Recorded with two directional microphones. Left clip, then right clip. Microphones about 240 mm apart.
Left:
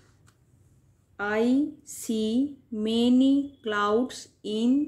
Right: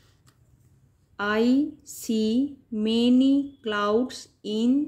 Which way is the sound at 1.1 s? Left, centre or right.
Centre.